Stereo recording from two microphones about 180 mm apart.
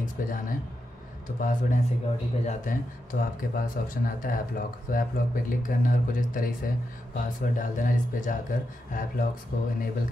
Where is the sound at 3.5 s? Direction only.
50° left (ahead or behind).